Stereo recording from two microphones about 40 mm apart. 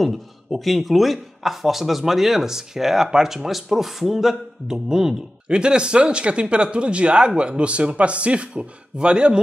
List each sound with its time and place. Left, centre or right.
0.0 s a man's voice: centre; by 9.4 s right